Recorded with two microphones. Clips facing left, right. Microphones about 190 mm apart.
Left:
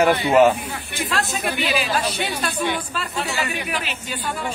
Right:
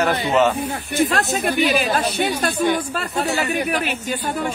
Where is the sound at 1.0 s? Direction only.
45° right (ahead or behind).